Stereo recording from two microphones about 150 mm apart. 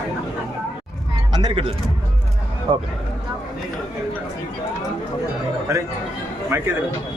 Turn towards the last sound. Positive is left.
turn(degrees=-15)  # may be behind; listen again after turning